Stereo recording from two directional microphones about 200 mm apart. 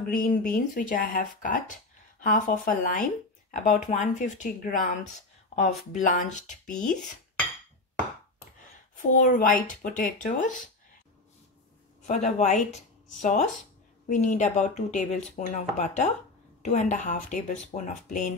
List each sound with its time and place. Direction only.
0.0 s speech: 45° left (ahead or behind)
5.9 s speech: 40° left (ahead or behind)
8.9 s speech: 40° left (ahead or behind)
12.1 s speech: 35° left (ahead or behind)